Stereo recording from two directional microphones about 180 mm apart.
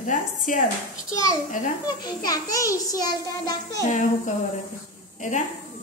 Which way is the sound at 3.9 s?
45° left (ahead or behind).